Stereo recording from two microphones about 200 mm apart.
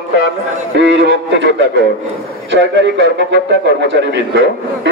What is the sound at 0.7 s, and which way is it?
A man's voice, 65° right (ahead or behind).